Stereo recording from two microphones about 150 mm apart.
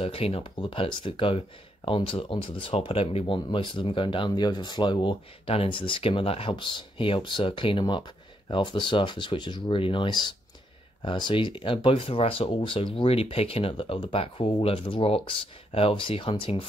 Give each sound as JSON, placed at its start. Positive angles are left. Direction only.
{"t": 0.0, "sound": "speech", "side_deg": 40}